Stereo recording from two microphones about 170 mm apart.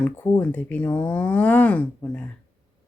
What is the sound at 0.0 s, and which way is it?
Speech, 10° left (ahead or behind).